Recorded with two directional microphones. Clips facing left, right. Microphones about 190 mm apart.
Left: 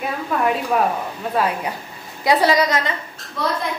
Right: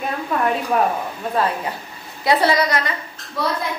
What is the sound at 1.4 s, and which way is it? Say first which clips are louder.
A woman's voice: even; 10° left (ahead or behind).